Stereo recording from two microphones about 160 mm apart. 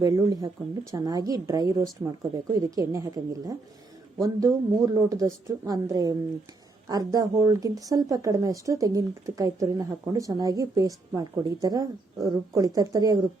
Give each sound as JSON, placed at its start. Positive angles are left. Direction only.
{"t": 0.0, "sound": "speech", "side_deg": -20}